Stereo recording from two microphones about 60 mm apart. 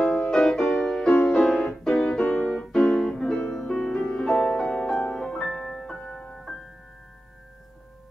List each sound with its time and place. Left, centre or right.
0.0 s music: centre
1.4 s piano: centre
1.9 s music: centre